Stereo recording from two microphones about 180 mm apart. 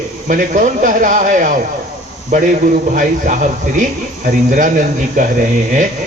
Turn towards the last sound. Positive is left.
turn(degrees=-45)  # may be behind; listen again after turning